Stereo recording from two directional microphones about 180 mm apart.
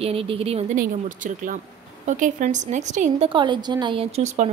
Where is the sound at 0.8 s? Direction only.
45° right (ahead or behind).